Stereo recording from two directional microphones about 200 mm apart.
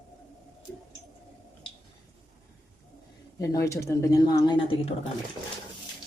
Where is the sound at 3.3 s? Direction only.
15° left (ahead or behind).